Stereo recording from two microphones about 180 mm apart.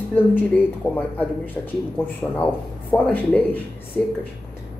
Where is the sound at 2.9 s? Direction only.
10° left (ahead or behind).